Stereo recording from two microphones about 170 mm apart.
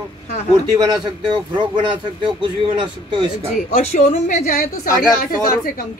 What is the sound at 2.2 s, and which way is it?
Speech, 30° right (ahead or behind).